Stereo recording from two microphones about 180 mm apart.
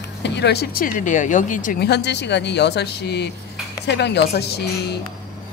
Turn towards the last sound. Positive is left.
turn(degrees=65)  # may be behind; listen again after turning